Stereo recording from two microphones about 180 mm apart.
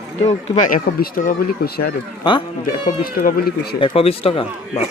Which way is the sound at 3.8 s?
30° left (ahead or behind).